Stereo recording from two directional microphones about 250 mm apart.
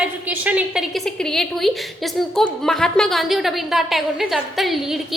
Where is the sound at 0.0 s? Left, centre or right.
Centre.